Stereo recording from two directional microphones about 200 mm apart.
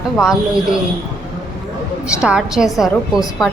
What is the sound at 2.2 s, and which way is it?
A woman's voice, 5° right (ahead or behind).